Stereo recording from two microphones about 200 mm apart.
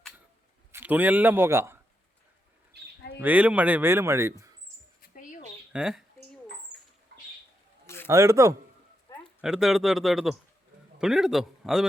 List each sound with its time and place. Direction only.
0.7 s a man's voice: 10° right (ahead or behind)
3.2 s speech: 10° right (ahead or behind)
5.1 s a sound: 40° left (ahead or behind)
5.7 s speech: 5° right (ahead or behind)
7.1 s bird: 55° right (ahead or behind)
8.0 s speech: 15° right (ahead or behind)
9.4 s speech: 5° right (ahead or behind)